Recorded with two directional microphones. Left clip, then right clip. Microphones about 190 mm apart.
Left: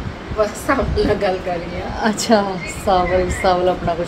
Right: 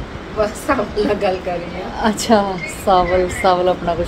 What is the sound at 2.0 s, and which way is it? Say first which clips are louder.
Speech: right 1 dB; 15° right (ahead or behind).